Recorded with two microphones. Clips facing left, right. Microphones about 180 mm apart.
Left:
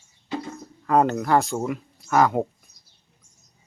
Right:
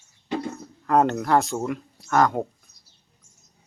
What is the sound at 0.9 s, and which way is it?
Speech, centre (ahead or behind).